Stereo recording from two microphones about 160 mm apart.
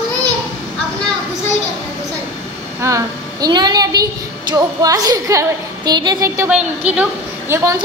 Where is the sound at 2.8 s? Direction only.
20° right (ahead or behind).